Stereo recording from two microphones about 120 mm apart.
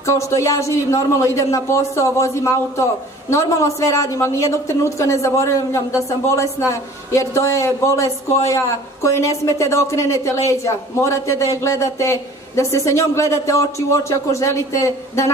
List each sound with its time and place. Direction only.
0.0 s a woman's voice: 25° left (ahead or behind)